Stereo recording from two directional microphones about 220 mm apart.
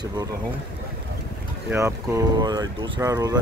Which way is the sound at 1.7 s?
15° right (ahead or behind).